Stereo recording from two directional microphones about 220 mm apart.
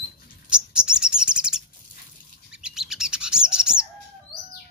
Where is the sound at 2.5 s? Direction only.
Centre (ahead or behind).